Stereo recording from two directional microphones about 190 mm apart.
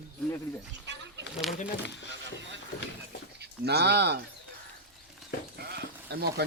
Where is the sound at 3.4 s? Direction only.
60° right (ahead or behind).